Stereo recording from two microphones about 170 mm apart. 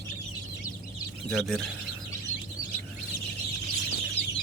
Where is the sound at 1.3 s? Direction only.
Centre (ahead or behind).